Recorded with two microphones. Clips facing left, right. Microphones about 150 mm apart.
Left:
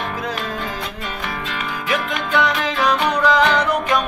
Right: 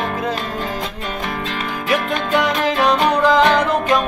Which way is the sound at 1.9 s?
35° right (ahead or behind).